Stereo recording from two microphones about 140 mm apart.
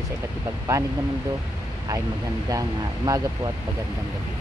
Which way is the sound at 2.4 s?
25° right (ahead or behind).